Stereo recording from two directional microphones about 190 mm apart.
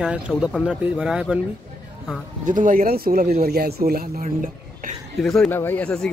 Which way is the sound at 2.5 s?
45° right (ahead or behind).